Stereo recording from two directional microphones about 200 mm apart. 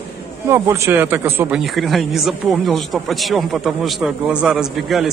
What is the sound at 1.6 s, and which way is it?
Speech, centre (ahead or behind).